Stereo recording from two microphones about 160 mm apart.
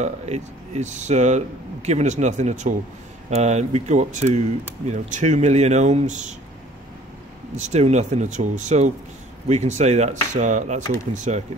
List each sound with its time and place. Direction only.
0.0 s speech: 45° right (ahead or behind)
7.5 s speech: 45° right (ahead or behind)